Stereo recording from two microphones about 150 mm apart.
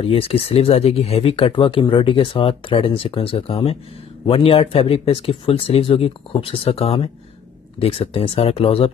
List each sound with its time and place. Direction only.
0.0 s speech: 40° left (ahead or behind)